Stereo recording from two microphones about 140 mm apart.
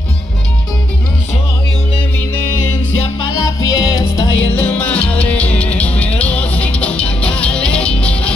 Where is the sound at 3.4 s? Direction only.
25° left (ahead or behind).